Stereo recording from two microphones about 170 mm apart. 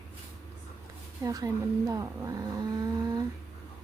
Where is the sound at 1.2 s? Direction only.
20° right (ahead or behind).